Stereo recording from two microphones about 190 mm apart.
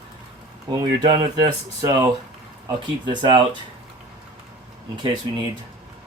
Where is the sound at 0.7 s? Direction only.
25° right (ahead or behind).